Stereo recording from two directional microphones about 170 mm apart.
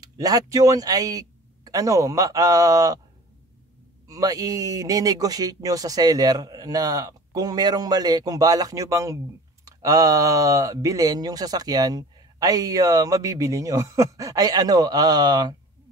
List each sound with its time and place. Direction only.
0.0 s speech: 20° right (ahead or behind)
4.1 s speech: 20° right (ahead or behind)